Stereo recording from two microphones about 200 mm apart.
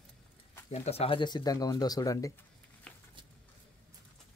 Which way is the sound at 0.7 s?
30° left (ahead or behind).